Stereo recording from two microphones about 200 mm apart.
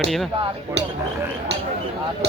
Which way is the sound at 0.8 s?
55° right (ahead or behind).